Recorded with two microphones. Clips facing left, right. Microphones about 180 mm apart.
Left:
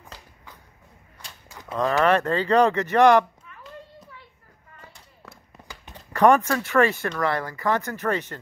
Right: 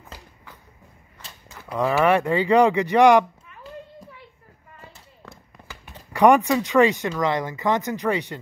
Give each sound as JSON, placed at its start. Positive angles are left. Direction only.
{"t": 1.8, "sound": "speech", "side_deg": -10}
{"t": 4.9, "sound": "a sound", "side_deg": 0}
{"t": 5.9, "sound": "speech", "side_deg": -15}